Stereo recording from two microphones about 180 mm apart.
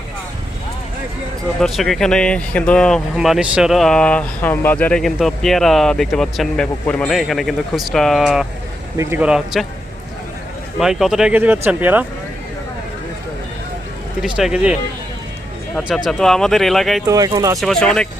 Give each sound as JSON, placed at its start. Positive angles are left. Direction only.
{"t": 1.5, "sound": "speech", "side_deg": 0}
{"t": 10.8, "sound": "speech", "side_deg": 0}
{"t": 14.2, "sound": "speech", "side_deg": -5}
{"t": 17.1, "sound": "speech", "side_deg": -20}
{"t": 17.6, "sound": "speech", "side_deg": 5}